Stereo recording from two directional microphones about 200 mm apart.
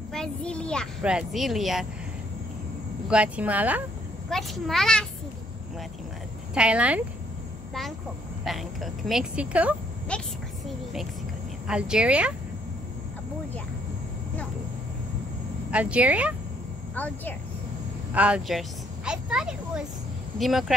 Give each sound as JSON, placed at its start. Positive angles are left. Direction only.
{"t": 0.1, "sound": "speech", "side_deg": 5}
{"t": 3.1, "sound": "speech", "side_deg": -5}
{"t": 6.5, "sound": "speech", "side_deg": -5}
{"t": 8.5, "sound": "speech", "side_deg": 0}
{"t": 10.1, "sound": "speech", "side_deg": 5}
{"t": 11.6, "sound": "speech", "side_deg": -5}
{"t": 15.7, "sound": "speech", "side_deg": -5}
{"t": 16.9, "sound": "a woman's voice", "side_deg": 10}
{"t": 18.1, "sound": "a woman's voice", "side_deg": -5}